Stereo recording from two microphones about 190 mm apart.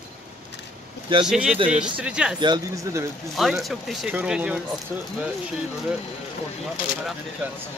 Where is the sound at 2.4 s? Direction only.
20° right (ahead or behind).